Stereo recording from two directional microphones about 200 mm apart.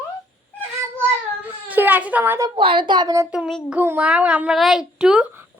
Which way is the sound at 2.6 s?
25° right (ahead or behind).